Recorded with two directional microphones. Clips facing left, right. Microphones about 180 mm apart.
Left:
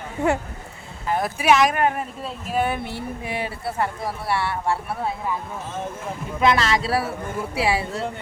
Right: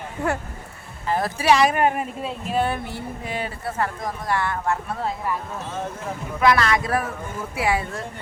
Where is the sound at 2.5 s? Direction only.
15° left (ahead or behind).